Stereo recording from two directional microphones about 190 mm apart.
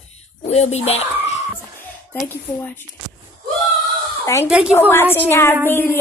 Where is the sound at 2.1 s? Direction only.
10° left (ahead or behind).